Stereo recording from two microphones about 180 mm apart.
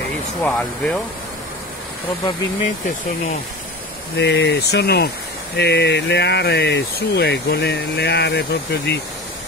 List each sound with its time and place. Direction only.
0.4 s speech: 5° left (ahead or behind)
4.2 s speech: 70° left (ahead or behind)